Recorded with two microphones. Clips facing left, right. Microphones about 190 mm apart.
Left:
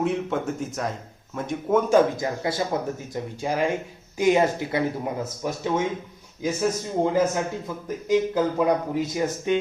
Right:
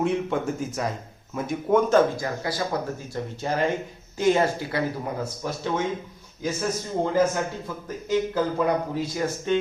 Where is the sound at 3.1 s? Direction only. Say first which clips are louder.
Right 1 dB; 10° left (ahead or behind).